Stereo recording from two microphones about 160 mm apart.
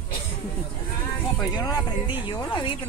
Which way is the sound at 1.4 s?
25° left (ahead or behind).